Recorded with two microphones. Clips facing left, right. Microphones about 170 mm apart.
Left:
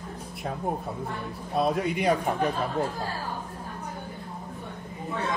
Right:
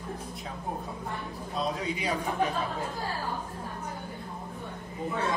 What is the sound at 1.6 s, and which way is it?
Speech, 60° left (ahead or behind).